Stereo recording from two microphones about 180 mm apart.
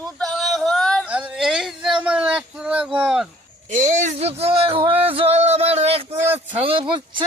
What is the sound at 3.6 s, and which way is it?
Speech, 45° right (ahead or behind).